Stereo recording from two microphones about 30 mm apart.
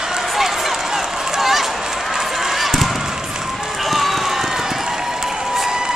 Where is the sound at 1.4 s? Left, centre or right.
Centre.